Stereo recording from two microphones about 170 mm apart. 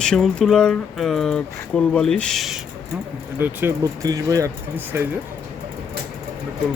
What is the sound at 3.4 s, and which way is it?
Speech, 15° right (ahead or behind).